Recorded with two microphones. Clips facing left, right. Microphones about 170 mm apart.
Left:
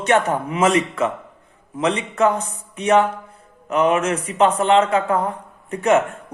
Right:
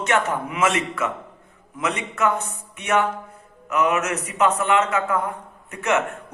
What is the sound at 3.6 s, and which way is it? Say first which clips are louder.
A man's voice: left 4 dB; 30° left (ahead or behind).